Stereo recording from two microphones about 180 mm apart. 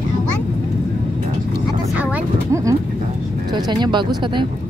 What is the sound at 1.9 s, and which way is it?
Speech, 10° right (ahead or behind).